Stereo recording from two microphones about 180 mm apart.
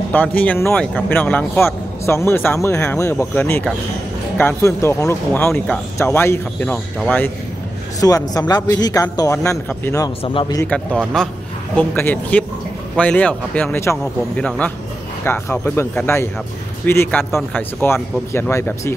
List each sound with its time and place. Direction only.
0.1 s a man's voice: 10° left (ahead or behind); by 10.6 s 25° left (ahead or behind)
10.6 s speech: 5° left (ahead or behind)